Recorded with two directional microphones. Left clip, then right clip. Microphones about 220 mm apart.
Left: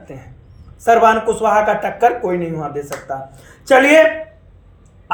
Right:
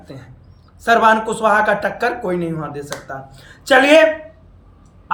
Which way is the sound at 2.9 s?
20° right (ahead or behind).